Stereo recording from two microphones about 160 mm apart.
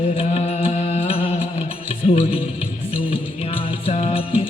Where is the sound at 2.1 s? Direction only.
35° left (ahead or behind).